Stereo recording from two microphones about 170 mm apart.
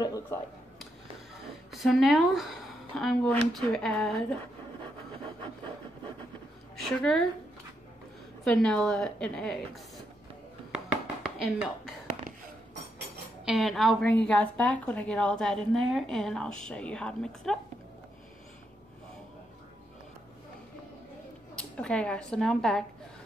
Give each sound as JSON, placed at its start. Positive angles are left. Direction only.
{"t": 0.0, "sound": "a sound", "side_deg": 20}
{"t": 1.7, "sound": "a woman's voice", "side_deg": 0}
{"t": 6.8, "sound": "a woman's voice", "side_deg": 5}
{"t": 8.5, "sound": "a woman's voice", "side_deg": 5}
{"t": 11.3, "sound": "a woman's voice", "side_deg": -5}
{"t": 13.5, "sound": "a woman's voice", "side_deg": 0}
{"t": 21.5, "sound": "a woman's voice", "side_deg": 5}